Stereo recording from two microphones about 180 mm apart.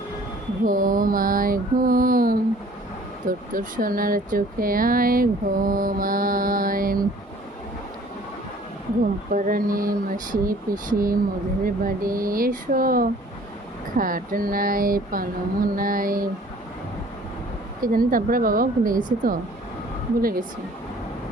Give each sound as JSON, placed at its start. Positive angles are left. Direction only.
{"t": 0.6, "sound": "speech", "side_deg": -50}
{"t": 9.3, "sound": "speech", "side_deg": -50}
{"t": 17.7, "sound": "speech", "side_deg": -50}